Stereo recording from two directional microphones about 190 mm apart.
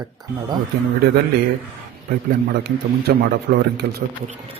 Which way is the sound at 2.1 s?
55° right (ahead or behind).